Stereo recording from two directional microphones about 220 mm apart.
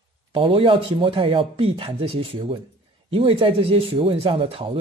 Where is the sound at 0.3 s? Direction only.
25° right (ahead or behind).